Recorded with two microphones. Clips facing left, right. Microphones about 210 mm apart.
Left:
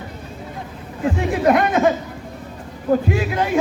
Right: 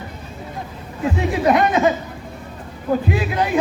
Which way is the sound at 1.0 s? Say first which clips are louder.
Left 1 dB; 55° left (ahead or behind).